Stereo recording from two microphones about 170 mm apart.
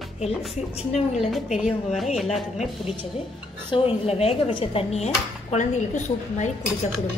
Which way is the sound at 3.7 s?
35° left (ahead or behind).